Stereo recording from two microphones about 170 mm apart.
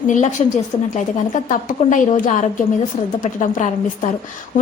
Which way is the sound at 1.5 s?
50° left (ahead or behind).